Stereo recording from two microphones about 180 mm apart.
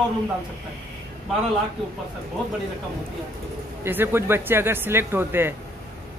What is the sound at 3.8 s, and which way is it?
Speech, 10° right (ahead or behind).